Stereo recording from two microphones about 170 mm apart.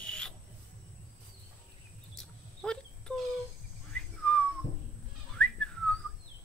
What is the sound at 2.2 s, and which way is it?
Dog, 5° left (ahead or behind).